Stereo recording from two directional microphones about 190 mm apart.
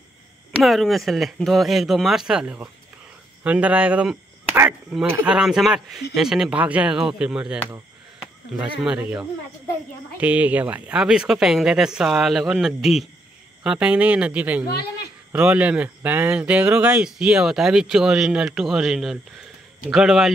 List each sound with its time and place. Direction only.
0.6 s speech: centre (ahead or behind)
14.7 s speech: 55° left (ahead or behind)
15.3 s speech: 5° right (ahead or behind)